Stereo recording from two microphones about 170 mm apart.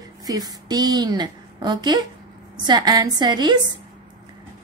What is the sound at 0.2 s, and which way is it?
A woman's voice, 20° right (ahead or behind).